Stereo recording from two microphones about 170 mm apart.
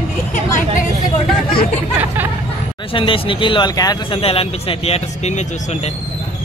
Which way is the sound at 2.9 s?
30° left (ahead or behind).